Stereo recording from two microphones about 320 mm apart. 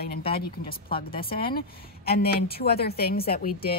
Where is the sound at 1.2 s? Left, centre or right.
Left.